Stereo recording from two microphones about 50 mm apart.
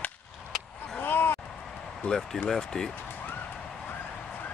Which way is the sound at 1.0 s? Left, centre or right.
Left.